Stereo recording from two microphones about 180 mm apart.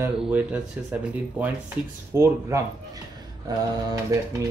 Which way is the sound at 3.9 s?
20° right (ahead or behind).